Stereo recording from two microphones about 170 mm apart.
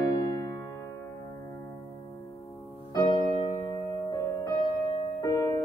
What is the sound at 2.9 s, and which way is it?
Music, 20° left (ahead or behind).